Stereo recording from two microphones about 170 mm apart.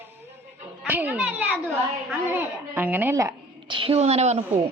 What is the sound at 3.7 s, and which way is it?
Speech, 30° right (ahead or behind).